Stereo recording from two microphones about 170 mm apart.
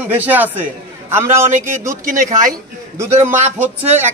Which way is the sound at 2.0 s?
50° right (ahead or behind).